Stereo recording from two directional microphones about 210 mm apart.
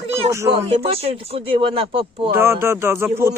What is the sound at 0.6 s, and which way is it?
Speech, 25° right (ahead or behind).